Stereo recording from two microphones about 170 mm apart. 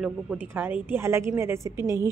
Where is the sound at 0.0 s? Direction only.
10° right (ahead or behind).